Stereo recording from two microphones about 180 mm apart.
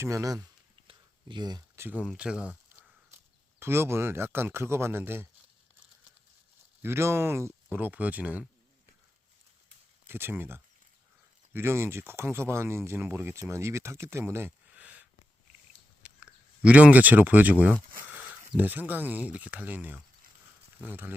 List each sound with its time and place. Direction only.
0.0 s speech: 15° right (ahead or behind)
0.9 s a sound: 25° right (ahead or behind); by 2.9 s 5° right (ahead or behind)
3.6 s speech: 15° right (ahead or behind)
6.8 s speech: 15° right (ahead or behind)
10.1 s speech: 10° right (ahead or behind)
16.0 s speech: 5° right (ahead or behind)